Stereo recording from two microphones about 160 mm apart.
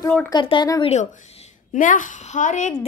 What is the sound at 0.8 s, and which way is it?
A woman's voice, 45° left (ahead or behind).